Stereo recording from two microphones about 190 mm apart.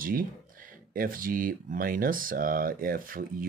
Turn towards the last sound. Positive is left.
turn(degrees=-45)  # may be behind; listen again after turning